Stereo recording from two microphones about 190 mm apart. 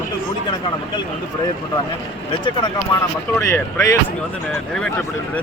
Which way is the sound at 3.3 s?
15° left (ahead or behind).